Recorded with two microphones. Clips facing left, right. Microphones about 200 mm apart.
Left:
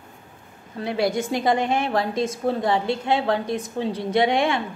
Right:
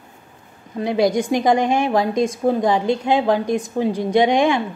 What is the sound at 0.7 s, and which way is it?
A woman's voice, 20° right (ahead or behind).